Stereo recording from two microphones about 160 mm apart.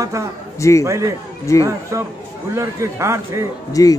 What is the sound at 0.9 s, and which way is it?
Speech, 20° right (ahead or behind).